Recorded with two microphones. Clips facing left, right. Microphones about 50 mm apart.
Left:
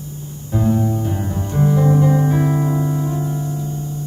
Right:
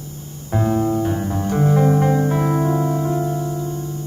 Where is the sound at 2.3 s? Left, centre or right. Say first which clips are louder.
Even; centre.